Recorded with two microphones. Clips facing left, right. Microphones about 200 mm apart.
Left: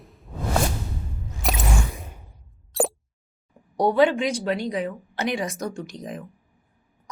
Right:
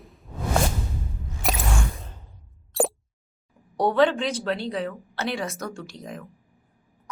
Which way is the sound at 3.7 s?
10° left (ahead or behind).